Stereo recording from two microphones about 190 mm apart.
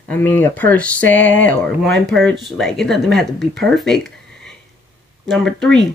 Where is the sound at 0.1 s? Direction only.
10° left (ahead or behind).